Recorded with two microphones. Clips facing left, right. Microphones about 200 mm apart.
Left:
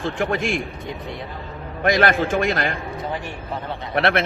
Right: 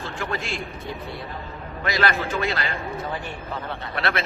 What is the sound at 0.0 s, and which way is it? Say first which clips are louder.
Speech: left 7 dB; 50° left (ahead or behind).